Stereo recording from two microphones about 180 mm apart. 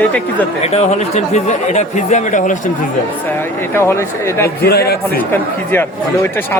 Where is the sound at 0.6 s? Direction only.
35° left (ahead or behind).